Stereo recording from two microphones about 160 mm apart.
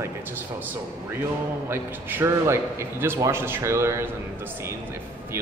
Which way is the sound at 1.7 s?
15° right (ahead or behind).